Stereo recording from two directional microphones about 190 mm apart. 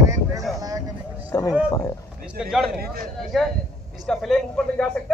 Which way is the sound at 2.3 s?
Centre (ahead or behind).